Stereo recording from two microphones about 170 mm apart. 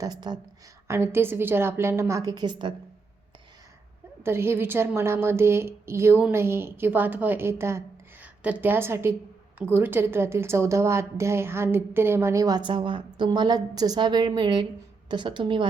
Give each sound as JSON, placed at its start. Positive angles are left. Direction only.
{"t": 0.0, "sound": "a woman's voice", "side_deg": -25}
{"t": 4.2, "sound": "a woman's voice", "side_deg": -15}